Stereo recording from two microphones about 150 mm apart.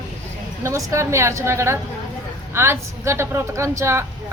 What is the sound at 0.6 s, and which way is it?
A woman's voice, 20° right (ahead or behind).